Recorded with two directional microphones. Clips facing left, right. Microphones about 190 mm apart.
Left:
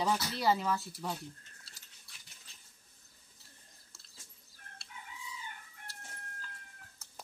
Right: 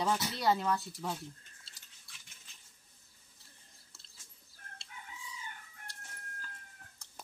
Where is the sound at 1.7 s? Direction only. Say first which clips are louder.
Left 2 dB; 25° right (ahead or behind).